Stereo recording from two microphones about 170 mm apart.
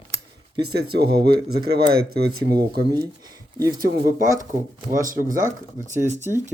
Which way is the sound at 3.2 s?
20° right (ahead or behind).